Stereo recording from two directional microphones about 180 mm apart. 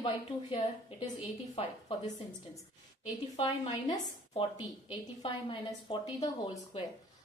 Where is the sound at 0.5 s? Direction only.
25° left (ahead or behind).